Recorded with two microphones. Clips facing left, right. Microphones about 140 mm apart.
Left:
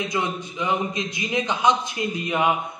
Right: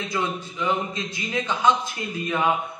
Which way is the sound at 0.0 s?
15° left (ahead or behind).